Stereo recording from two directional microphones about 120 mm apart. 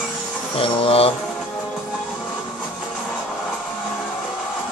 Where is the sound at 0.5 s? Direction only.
50° left (ahead or behind).